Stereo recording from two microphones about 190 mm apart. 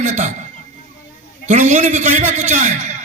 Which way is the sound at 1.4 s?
40° right (ahead or behind).